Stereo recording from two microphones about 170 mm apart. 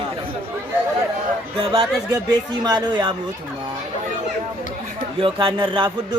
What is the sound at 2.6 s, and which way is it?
Speech, 25° right (ahead or behind).